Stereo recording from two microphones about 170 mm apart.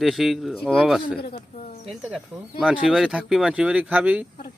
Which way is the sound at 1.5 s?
40° left (ahead or behind).